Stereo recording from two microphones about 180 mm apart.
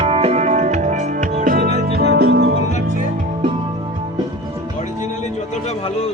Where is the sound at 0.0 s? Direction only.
35° right (ahead or behind); by 2.6 s 65° right (ahead or behind).